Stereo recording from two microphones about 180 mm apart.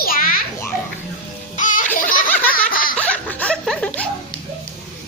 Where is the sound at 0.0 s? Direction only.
55° left (ahead or behind).